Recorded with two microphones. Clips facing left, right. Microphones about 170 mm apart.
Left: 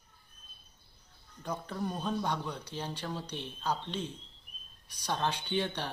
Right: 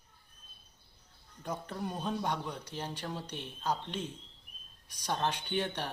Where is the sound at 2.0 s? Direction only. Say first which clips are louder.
Right 1 dB; 20° right (ahead or behind).